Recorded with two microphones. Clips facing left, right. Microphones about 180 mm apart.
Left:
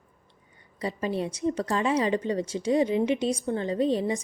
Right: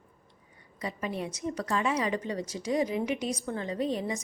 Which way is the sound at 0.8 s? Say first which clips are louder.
Left 5 dB; 30° left (ahead or behind).